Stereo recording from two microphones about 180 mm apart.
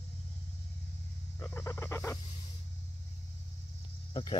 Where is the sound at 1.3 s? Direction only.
15° left (ahead or behind).